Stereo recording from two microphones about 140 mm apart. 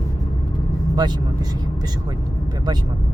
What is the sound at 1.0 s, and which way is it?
Speech, 30° right (ahead or behind).